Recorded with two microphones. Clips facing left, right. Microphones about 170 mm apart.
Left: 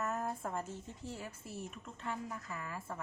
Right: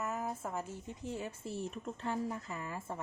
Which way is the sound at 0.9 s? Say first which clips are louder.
Right 4 dB; 20° right (ahead or behind).